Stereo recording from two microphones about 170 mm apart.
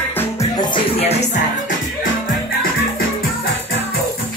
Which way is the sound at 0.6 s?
30° left (ahead or behind).